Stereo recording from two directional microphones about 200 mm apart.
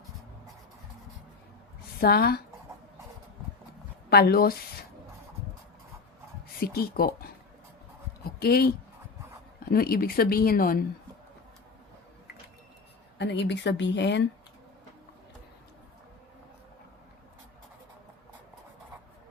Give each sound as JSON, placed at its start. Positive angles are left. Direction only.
{"t": 2.0, "sound": "speech", "side_deg": 50}
{"t": 4.1, "sound": "speech", "side_deg": 50}
{"t": 6.6, "sound": "speech", "side_deg": 50}
{"t": 8.4, "sound": "speech", "side_deg": 50}
{"t": 13.1, "sound": "speech", "side_deg": 60}